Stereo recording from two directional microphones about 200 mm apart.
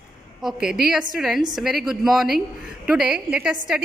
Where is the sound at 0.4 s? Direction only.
Centre (ahead or behind).